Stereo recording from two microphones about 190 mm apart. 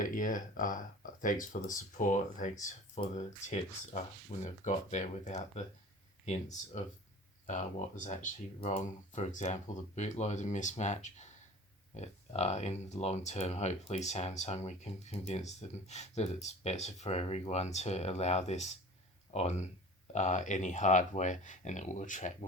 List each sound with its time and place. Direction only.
0.0 s speech: 45° left (ahead or behind)
4.4 s speech: 40° left (ahead or behind)